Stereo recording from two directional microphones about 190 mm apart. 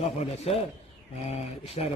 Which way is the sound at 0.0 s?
35° left (ahead or behind).